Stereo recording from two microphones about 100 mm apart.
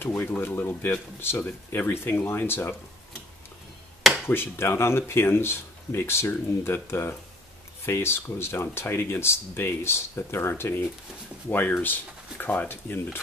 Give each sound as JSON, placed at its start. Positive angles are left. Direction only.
{"t": 0.0, "sound": "speech", "side_deg": 20}
{"t": 4.3, "sound": "speech", "side_deg": 25}